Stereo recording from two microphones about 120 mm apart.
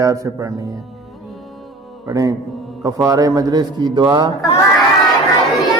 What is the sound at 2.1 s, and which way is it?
A man's voice, 30° right (ahead or behind).